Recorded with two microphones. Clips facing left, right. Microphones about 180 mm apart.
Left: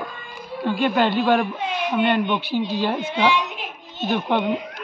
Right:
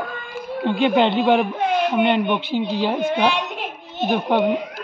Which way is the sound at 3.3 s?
65° right (ahead or behind).